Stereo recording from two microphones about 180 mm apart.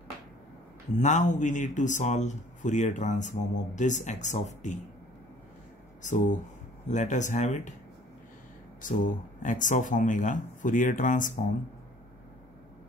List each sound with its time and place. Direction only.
0.9 s speech: 40° left (ahead or behind)
6.0 s speech: 45° left (ahead or behind)
8.8 s speech: 45° left (ahead or behind)